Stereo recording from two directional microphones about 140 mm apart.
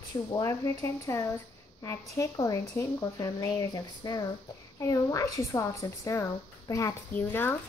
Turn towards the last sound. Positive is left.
turn(degrees=15)  # may be behind; listen again after turning